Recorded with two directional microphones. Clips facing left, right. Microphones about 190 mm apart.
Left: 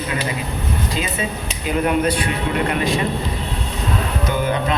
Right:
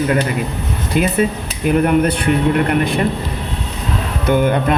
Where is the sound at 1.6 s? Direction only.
55° right (ahead or behind).